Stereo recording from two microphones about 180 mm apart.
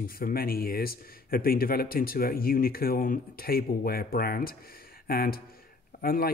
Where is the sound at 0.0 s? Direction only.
55° left (ahead or behind).